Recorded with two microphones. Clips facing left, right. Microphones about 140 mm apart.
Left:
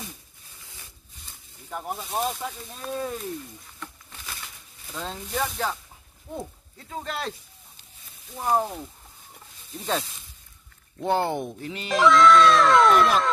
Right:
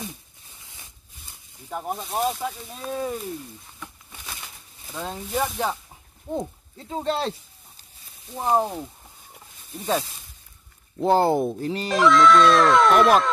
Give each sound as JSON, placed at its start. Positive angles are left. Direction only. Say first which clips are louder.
{"t": 1.7, "sound": "speech", "louder": "right 2 dB", "side_deg": -5}
{"t": 3.8, "sound": "a sound", "louder": "even", "side_deg": -10}
{"t": 4.9, "sound": "speech", "louder": "right 3 dB", "side_deg": -10}
{"t": 6.3, "sound": "speech", "louder": "right 6 dB", "side_deg": -20}
{"t": 11.0, "sound": "speech", "louder": "right 6 dB", "side_deg": -35}
{"t": 11.9, "sound": "speech", "louder": "even", "side_deg": 0}